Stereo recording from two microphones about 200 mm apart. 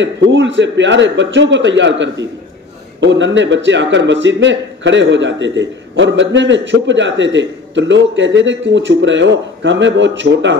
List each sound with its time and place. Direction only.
0.0 s a man's voice: 65° right (ahead or behind)